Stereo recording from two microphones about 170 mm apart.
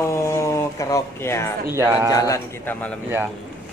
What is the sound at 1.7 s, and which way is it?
Speech, 15° right (ahead or behind).